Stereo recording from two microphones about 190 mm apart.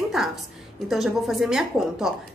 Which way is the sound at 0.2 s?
Centre (ahead or behind).